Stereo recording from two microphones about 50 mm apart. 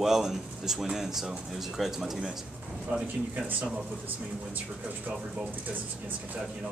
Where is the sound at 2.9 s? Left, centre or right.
Right.